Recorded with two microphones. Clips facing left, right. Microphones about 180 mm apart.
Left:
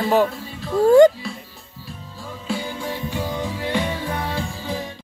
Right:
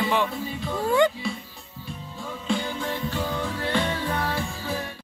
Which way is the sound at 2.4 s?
10° left (ahead or behind).